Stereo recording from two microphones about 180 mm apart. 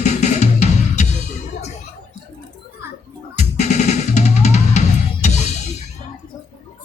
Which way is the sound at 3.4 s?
40° left (ahead or behind).